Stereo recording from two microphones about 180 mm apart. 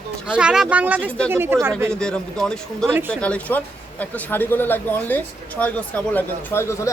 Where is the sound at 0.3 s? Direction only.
5° right (ahead or behind).